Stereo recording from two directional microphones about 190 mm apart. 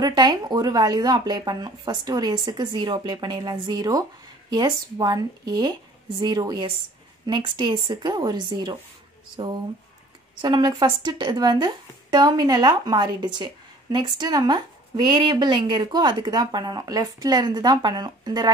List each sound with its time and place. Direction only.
0.0 s a woman's voice: 25° right (ahead or behind)
10.4 s a woman's voice: 25° right (ahead or behind)